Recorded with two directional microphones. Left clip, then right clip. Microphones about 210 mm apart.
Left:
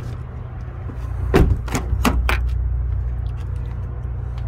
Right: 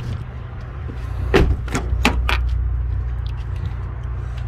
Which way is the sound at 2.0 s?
65° left (ahead or behind).